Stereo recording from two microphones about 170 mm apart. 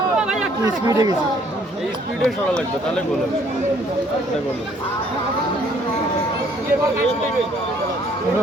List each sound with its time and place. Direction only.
0.6 s speech: 20° right (ahead or behind)